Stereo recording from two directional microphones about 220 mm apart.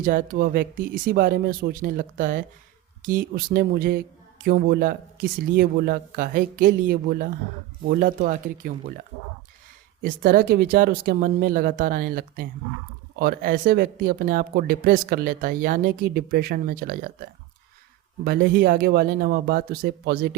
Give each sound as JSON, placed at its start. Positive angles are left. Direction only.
{"t": 0.0, "sound": "speech", "side_deg": -40}
{"t": 10.0, "sound": "speech", "side_deg": -40}
{"t": 18.3, "sound": "speech", "side_deg": -40}